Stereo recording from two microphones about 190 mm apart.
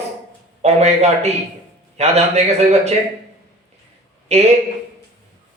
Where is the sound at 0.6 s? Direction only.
35° right (ahead or behind).